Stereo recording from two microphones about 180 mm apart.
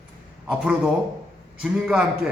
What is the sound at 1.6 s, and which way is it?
Speech, 5° right (ahead or behind).